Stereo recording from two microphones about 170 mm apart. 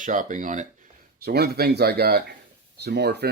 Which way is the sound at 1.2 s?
70° right (ahead or behind).